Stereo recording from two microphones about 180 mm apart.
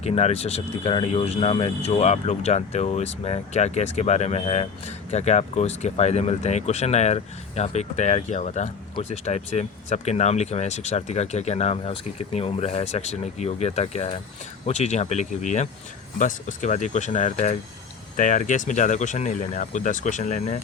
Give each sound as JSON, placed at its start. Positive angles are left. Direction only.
{"t": 0.0, "sound": "speech", "side_deg": 35}